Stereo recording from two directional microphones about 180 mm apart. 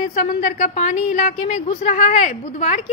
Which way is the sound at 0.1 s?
45° left (ahead or behind).